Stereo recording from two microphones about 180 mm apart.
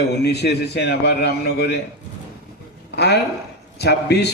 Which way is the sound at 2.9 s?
65° left (ahead or behind).